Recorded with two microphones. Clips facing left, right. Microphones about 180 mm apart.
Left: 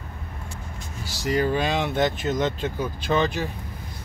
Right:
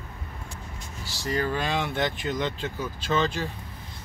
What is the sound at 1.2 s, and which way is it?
Speech, 15° left (ahead or behind).